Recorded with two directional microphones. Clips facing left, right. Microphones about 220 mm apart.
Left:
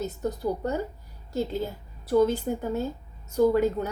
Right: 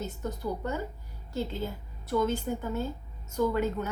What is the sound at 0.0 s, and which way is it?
Speech, 35° left (ahead or behind).